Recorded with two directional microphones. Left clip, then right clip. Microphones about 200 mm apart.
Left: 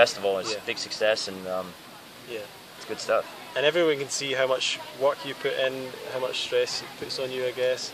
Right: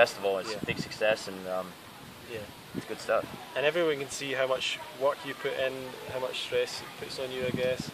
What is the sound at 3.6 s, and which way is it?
Speech, 15° left (ahead or behind).